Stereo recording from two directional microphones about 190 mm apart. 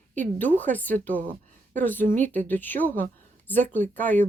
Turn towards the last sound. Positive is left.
turn(degrees=10)  # may be behind; listen again after turning